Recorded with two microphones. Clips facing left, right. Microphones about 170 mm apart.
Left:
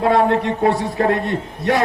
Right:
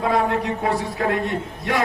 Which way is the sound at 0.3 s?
40° left (ahead or behind).